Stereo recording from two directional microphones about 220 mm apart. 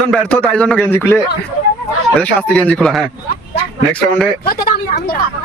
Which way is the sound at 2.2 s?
5° left (ahead or behind).